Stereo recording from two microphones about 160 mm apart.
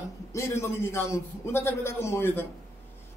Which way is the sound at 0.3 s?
15° left (ahead or behind).